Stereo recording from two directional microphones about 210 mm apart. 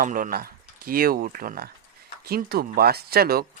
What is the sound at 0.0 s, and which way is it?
Speech, 40° right (ahead or behind).